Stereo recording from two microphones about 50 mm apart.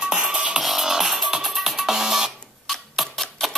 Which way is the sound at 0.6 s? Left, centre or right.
Centre.